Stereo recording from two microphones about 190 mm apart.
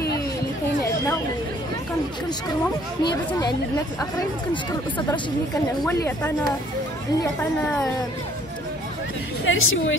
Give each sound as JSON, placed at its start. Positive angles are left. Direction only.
{"t": 3.0, "sound": "speech", "side_deg": 20}
{"t": 9.4, "sound": "a woman's voice", "side_deg": 90}